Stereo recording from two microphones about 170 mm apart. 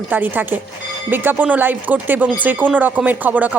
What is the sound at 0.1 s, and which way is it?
Speech, 10° right (ahead or behind).